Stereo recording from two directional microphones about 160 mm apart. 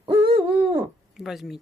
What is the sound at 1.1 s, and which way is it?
Speech, centre (ahead or behind).